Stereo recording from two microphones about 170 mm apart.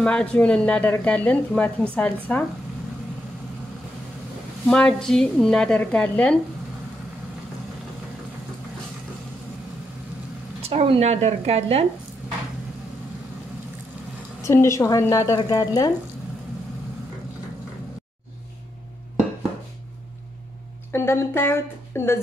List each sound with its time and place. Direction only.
0.0 s a woman's voice: 5° left (ahead or behind)
4.6 s a woman's voice: 5° left (ahead or behind)
10.7 s a woman's voice: 40° right (ahead or behind)
14.4 s a woman's voice: 15° left (ahead or behind)
20.9 s a woman's voice: 15° left (ahead or behind)